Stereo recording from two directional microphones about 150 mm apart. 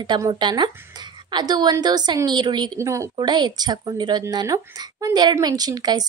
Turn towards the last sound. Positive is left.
turn(degrees=-25)  # may be behind; listen again after turning